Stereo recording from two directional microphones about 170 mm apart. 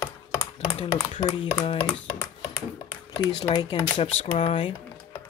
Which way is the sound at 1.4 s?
35° left (ahead or behind).